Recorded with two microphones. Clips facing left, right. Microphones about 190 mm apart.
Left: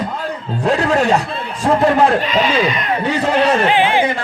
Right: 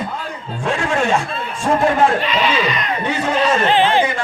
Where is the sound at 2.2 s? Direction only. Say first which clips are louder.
Left 2 dB; 45° left (ahead or behind).